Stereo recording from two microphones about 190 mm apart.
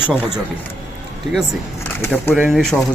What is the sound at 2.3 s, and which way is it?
Speech, centre (ahead or behind).